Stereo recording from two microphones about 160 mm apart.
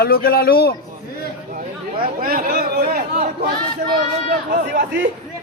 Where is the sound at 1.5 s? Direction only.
60° right (ahead or behind).